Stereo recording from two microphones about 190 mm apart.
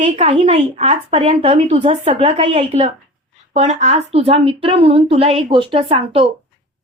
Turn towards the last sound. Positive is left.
turn(degrees=-30)  # may be behind; listen again after turning